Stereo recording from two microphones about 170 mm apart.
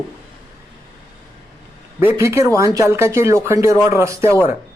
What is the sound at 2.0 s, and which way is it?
Speech, 15° right (ahead or behind).